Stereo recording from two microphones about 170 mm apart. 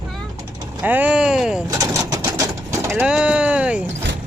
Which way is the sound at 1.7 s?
20° right (ahead or behind).